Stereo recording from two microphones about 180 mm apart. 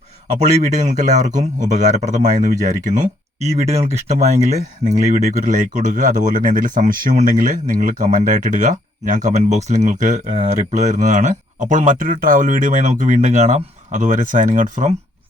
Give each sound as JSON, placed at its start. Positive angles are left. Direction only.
{"t": 0.3, "sound": "speech", "side_deg": -40}
{"t": 3.4, "sound": "speech", "side_deg": -35}